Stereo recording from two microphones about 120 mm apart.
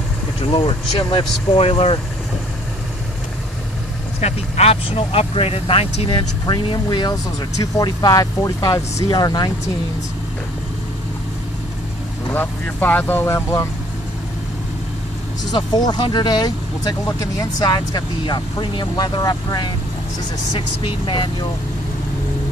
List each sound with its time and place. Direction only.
0.5 s speech: 45° left (ahead or behind)
4.2 s speech: 60° left (ahead or behind); by 9.5 s 35° left (ahead or behind)
12.3 s speech: 15° left (ahead or behind)
15.5 s speech: 35° left (ahead or behind)